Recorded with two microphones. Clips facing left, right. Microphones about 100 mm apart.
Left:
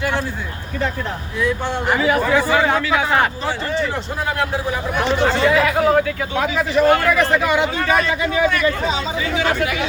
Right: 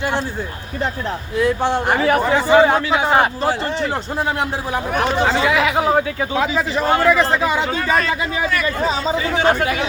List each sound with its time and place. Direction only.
1.6 s a man's voice: 30° right (ahead or behind)
2.1 s a man's voice: 25° right (ahead or behind)
5.4 s a man's voice: 10° right (ahead or behind)
9.3 s a man's voice: 40° right (ahead or behind)